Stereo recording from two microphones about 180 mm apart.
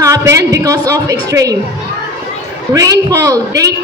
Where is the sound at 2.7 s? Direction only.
20° right (ahead or behind).